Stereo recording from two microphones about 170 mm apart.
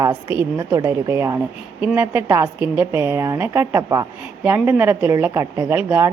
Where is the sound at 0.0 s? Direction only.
20° right (ahead or behind).